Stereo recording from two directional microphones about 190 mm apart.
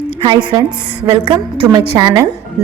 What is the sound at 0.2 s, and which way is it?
A woman's voice, 25° right (ahead or behind).